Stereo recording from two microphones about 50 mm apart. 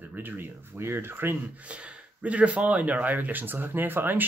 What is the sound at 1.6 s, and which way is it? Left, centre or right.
Speech, right.